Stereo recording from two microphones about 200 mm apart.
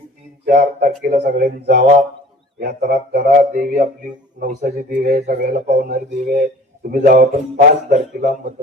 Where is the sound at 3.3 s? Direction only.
45° right (ahead or behind).